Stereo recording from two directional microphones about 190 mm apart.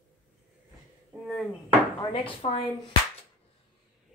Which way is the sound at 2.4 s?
30° left (ahead or behind).